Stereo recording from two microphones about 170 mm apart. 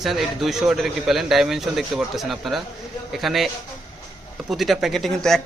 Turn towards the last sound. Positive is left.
turn(degrees=0)  # may be behind; listen again after turning